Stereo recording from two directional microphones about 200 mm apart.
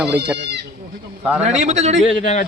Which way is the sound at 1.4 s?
35° right (ahead or behind).